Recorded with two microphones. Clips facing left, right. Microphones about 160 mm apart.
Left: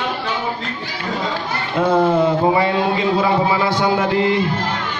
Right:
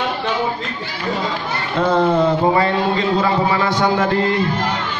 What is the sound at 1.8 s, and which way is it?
A man's voice, 10° left (ahead or behind).